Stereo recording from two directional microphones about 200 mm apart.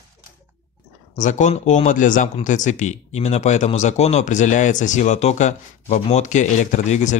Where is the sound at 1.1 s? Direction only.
35° left (ahead or behind).